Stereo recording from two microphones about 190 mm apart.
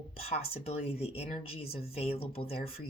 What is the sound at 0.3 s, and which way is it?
Speech, 30° left (ahead or behind).